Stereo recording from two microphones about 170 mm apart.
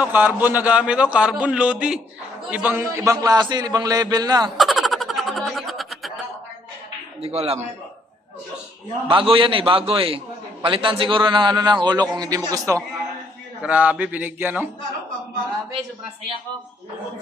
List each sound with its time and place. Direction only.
0.0 s a man's voice: 10° right (ahead or behind)
3.1 s a man's voice: 20° right (ahead or behind)
4.6 s a sound: centre (ahead or behind)
7.2 s a man's voice: 35° right (ahead or behind)
9.1 s a man's voice: 30° right (ahead or behind)
13.6 s a man's voice: 10° right (ahead or behind)